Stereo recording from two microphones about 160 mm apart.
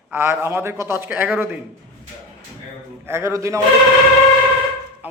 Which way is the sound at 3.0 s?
15° right (ahead or behind).